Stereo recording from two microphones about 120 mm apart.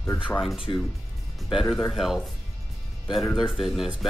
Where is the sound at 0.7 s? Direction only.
35° left (ahead or behind).